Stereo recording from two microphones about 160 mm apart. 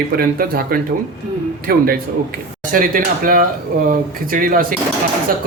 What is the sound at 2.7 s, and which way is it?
Speech, 60° right (ahead or behind).